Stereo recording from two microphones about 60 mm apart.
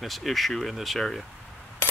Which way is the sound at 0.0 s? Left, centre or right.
Centre.